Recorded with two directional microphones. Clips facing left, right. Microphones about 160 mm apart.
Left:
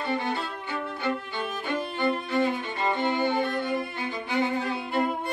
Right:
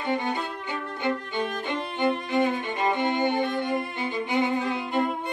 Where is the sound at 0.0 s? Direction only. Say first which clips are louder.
Right 1 dB; 15° right (ahead or behind).